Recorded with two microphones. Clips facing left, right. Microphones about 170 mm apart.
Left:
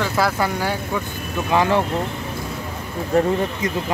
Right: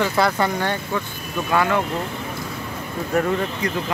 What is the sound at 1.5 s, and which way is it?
Speech, 25° left (ahead or behind).